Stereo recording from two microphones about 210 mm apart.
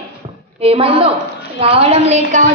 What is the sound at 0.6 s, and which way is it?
A woman's voice, 25° right (ahead or behind).